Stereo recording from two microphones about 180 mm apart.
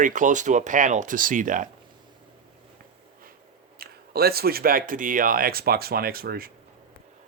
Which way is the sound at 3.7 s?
60° right (ahead or behind).